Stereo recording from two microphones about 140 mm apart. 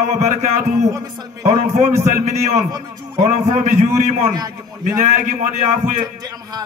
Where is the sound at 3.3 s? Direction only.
55° right (ahead or behind).